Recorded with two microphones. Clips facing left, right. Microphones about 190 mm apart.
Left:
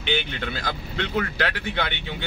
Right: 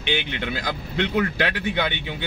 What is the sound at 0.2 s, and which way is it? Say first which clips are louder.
Speech: right 2 dB; 15° right (ahead or behind).